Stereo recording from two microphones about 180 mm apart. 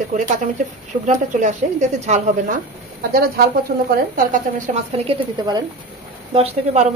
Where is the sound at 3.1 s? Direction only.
55° right (ahead or behind).